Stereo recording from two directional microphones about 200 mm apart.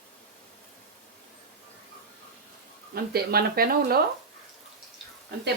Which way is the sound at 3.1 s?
50° right (ahead or behind).